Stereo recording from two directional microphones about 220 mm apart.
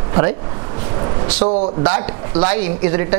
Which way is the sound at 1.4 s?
30° right (ahead or behind).